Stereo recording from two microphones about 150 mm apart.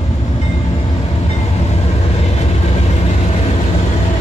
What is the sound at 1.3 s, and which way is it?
Train, 45° left (ahead or behind).